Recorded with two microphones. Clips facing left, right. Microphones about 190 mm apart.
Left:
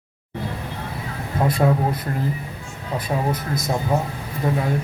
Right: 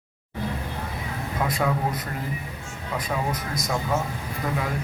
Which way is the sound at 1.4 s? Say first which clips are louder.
Left 6 dB; 30° left (ahead or behind).